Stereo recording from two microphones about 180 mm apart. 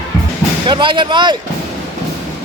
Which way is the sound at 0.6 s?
25° right (ahead or behind).